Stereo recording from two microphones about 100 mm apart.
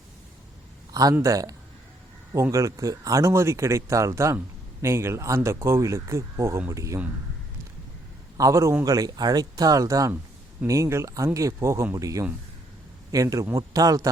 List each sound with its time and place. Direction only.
1.2 s speech: 35° right (ahead or behind)
8.4 s speech: 35° right (ahead or behind)